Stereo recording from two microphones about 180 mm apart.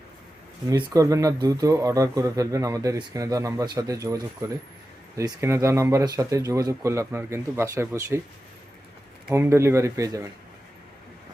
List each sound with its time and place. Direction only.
0.7 s speech: 20° right (ahead or behind)
9.3 s speech: 15° right (ahead or behind)